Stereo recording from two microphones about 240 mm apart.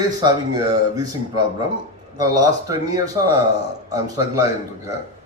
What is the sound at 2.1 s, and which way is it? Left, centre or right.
A woman's voice, centre.